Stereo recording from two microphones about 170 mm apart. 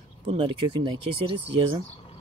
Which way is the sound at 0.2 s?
30° right (ahead or behind).